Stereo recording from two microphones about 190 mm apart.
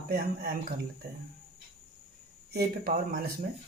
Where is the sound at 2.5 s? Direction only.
50° right (ahead or behind).